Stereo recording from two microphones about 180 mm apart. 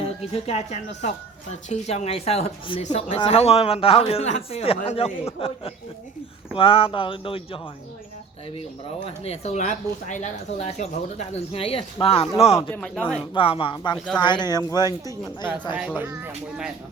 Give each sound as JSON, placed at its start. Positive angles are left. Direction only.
{"t": 0.0, "sound": "speech", "side_deg": 35}
{"t": 12.7, "sound": "speech", "side_deg": 5}
{"t": 13.3, "sound": "speech", "side_deg": 30}
{"t": 16.0, "sound": "speech", "side_deg": -10}